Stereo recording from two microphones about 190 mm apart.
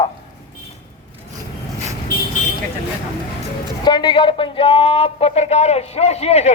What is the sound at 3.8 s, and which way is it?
A man's voice, 25° left (ahead or behind).